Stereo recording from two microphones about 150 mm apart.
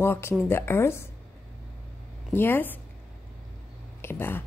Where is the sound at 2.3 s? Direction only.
15° left (ahead or behind).